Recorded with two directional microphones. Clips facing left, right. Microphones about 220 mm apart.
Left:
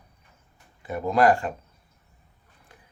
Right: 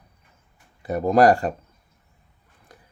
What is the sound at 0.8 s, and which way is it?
Speech, 40° right (ahead or behind).